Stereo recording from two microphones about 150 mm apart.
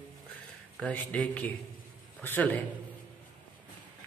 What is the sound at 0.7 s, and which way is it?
A man's voice, 10° left (ahead or behind).